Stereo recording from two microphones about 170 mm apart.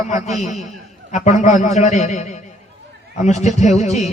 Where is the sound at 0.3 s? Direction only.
45° left (ahead or behind).